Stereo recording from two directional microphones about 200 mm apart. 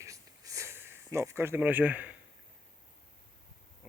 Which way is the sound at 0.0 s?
15° right (ahead or behind).